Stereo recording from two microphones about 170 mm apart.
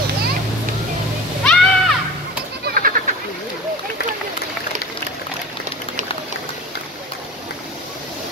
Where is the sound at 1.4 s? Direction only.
5° left (ahead or behind).